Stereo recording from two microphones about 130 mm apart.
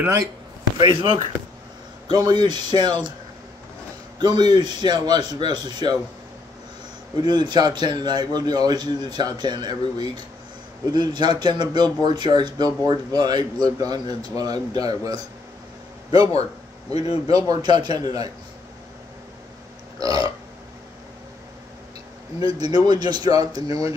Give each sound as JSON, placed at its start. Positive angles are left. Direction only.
{"t": 0.7, "sound": "speech", "side_deg": -40}
{"t": 4.4, "sound": "speech", "side_deg": -35}
{"t": 7.2, "sound": "speech", "side_deg": -35}
{"t": 16.1, "sound": "burping", "side_deg": -30}
{"t": 16.9, "sound": "speech", "side_deg": 50}
{"t": 17.3, "sound": "speech", "side_deg": -30}
{"t": 20.0, "sound": "burping", "side_deg": -25}
{"t": 22.6, "sound": "speech", "side_deg": -30}